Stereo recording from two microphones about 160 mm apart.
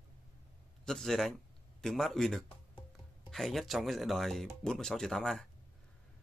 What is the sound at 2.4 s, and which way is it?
Music, 35° left (ahead or behind).